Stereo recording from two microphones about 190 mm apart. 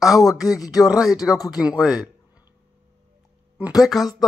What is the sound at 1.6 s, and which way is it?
Speech, 5° right (ahead or behind).